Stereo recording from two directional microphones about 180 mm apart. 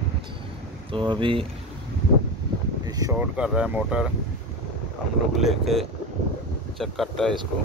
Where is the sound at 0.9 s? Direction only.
25° right (ahead or behind).